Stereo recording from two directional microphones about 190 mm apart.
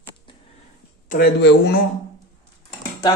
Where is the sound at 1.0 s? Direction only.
50° left (ahead or behind).